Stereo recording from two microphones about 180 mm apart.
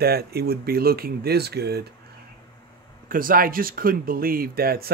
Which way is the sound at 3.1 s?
50° right (ahead or behind).